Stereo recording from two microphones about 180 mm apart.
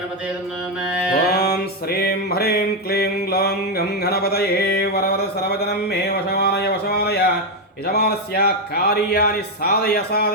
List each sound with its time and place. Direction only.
1.3 s music: 60° left (ahead or behind)
7.9 s speech: 60° left (ahead or behind)